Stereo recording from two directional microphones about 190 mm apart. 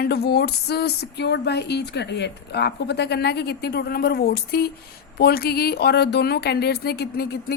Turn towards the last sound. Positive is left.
turn(degrees=60)  # may be behind; listen again after turning